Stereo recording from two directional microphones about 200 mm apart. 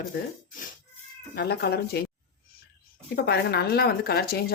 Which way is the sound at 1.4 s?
55° left (ahead or behind).